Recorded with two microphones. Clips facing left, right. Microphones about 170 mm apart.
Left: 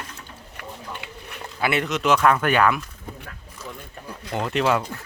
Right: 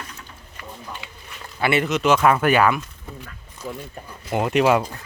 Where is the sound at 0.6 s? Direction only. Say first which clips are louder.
Even; 60° left (ahead or behind).